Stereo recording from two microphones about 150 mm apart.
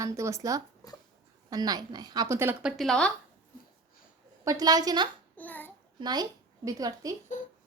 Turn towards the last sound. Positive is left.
turn(degrees=-25)  # may be behind; listen again after turning